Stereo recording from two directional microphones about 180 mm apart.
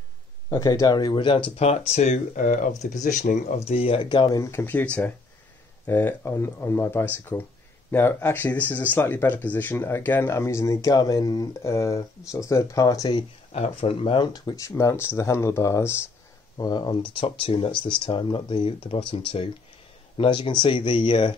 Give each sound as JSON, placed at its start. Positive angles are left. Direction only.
{"t": 0.5, "sound": "speech", "side_deg": 20}
{"t": 13.5, "sound": "speech", "side_deg": 35}